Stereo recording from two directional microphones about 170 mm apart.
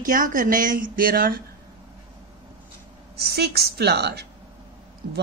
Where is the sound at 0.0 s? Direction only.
50° right (ahead or behind).